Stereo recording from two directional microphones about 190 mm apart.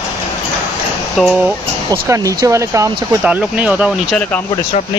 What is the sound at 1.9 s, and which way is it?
Speech, 15° right (ahead or behind).